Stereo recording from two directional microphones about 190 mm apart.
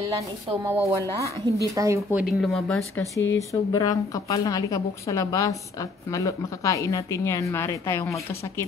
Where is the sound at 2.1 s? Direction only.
Centre (ahead or behind).